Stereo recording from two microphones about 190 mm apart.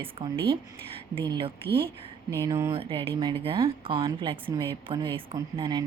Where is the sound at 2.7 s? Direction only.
25° right (ahead or behind).